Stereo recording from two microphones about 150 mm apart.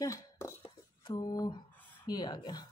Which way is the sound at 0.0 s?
20° left (ahead or behind).